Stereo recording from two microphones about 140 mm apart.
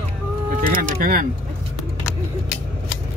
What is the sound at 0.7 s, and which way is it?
Speech, 90° right.